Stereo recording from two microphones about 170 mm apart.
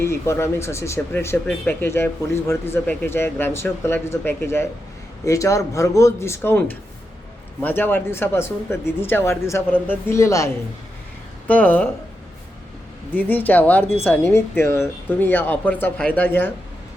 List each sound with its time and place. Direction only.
0.0 s speech: 15° left (ahead or behind)
7.6 s speech: 10° left (ahead or behind)
13.1 s speech: 10° left (ahead or behind)